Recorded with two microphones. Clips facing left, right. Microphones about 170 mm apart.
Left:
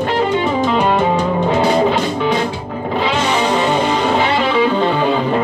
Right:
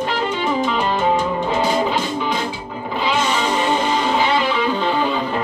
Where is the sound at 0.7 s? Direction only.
65° left (ahead or behind).